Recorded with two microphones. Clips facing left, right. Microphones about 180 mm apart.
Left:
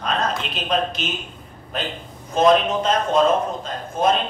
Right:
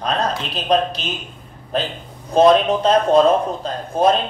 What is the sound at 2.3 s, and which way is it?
A man's voice, 35° right (ahead or behind).